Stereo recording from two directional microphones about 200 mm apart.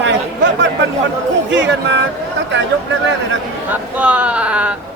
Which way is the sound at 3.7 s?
5° right (ahead or behind).